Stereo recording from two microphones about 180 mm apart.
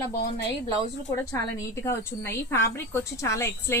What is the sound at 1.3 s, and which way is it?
A woman's voice, 15° left (ahead or behind).